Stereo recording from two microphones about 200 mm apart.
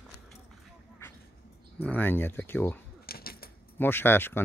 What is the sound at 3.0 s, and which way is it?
Keys jangling, 50° left (ahead or behind).